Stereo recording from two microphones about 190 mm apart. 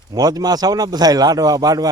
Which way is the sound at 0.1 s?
20° right (ahead or behind).